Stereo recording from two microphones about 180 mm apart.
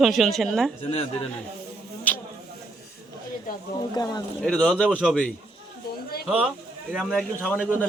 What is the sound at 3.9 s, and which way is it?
Speech, 20° left (ahead or behind).